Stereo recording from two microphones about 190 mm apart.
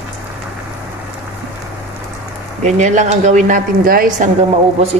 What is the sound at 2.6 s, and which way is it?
Speech, 40° right (ahead or behind).